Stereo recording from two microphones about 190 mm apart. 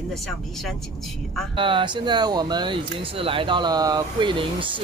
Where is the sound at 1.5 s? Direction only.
25° right (ahead or behind).